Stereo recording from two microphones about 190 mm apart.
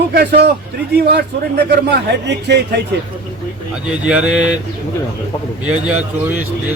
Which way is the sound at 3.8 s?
5° right (ahead or behind).